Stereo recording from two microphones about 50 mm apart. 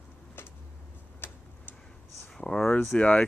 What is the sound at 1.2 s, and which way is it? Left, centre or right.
Tick-tock, left.